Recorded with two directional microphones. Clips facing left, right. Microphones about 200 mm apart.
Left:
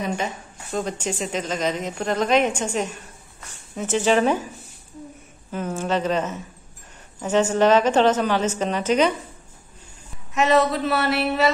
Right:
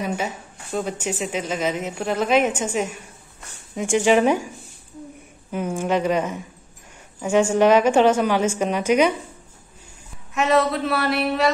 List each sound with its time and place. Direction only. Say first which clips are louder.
0.0 s a woman's voice: even; 10° right (ahead or behind)
5.5 s a woman's voice: right 2 dB; 10° right (ahead or behind)
10.3 s speech: left 1 dB; centre (ahead or behind)